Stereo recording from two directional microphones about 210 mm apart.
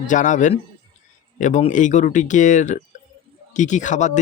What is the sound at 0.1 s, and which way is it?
Speech, 35° left (ahead or behind).